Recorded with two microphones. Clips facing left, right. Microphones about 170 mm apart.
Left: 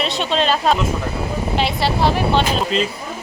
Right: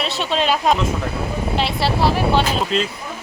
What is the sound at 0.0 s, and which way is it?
Speech, 5° right (ahead or behind).